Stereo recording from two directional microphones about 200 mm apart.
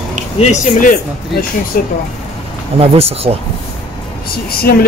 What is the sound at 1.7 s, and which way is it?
Speech, 45° left (ahead or behind).